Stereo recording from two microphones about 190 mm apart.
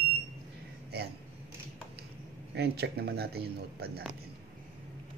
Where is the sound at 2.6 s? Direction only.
60° right (ahead or behind).